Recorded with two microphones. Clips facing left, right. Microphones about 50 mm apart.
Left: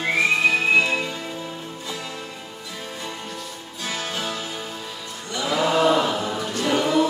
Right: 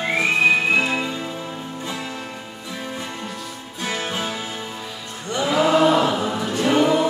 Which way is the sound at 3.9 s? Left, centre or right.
Right.